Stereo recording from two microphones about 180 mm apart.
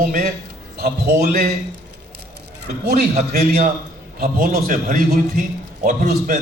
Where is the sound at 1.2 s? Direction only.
50° right (ahead or behind).